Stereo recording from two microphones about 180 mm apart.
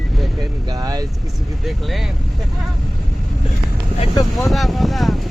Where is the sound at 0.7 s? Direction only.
20° right (ahead or behind).